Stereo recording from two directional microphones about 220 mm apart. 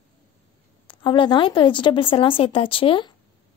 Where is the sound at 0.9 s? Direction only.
25° left (ahead or behind).